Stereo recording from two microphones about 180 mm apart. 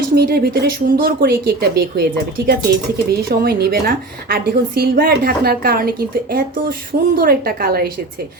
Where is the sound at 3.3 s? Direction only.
60° right (ahead or behind).